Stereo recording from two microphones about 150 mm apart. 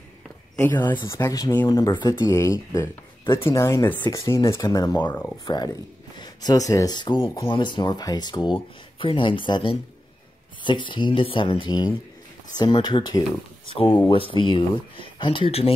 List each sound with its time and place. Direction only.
0.7 s speech: 15° left (ahead or behind)
5.1 s speech: 15° left (ahead or behind)
5.5 s speech: 30° left (ahead or behind)